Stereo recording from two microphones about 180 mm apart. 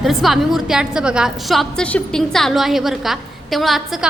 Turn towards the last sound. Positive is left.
turn(degrees=0)  # may be behind; listen again after turning